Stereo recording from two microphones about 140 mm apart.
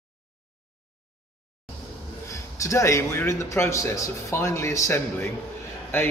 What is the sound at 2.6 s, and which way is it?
A man's voice, 20° left (ahead or behind).